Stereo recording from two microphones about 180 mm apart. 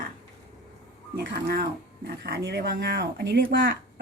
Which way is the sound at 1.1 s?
60° right (ahead or behind).